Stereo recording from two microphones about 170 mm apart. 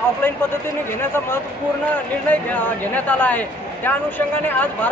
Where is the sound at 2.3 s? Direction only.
10° left (ahead or behind).